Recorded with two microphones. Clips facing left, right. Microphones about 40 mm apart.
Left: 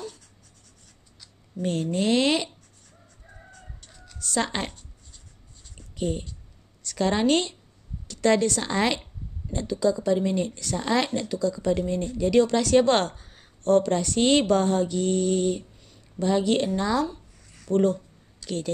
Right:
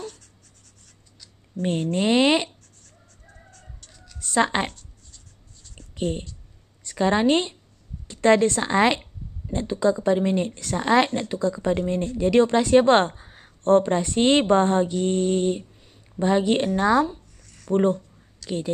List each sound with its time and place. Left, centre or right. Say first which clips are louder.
1.6 s speech: right 2 dB; right
3.5 s chicken: left 1 dB; centre
4.2 s speech: right 6 dB; right
4.7 s writing: even; left
5.9 s a woman's voice: right 1 dB; right
18.4 s speech: right 2 dB; centre